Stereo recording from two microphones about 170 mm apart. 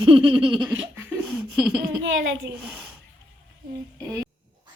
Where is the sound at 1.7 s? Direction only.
70° right (ahead or behind).